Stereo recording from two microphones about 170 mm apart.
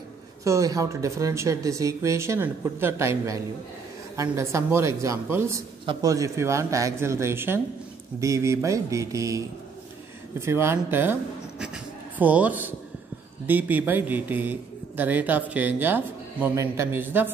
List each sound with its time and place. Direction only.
0.4 s a man's voice: 20° right (ahead or behind)
10.4 s a man's voice: 15° right (ahead or behind)